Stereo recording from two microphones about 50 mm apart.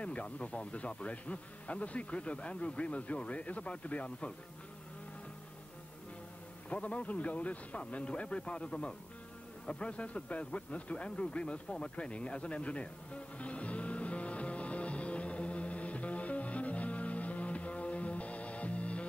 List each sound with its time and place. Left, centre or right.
0.0 s speech: left
6.7 s speech: left
11.9 s music: left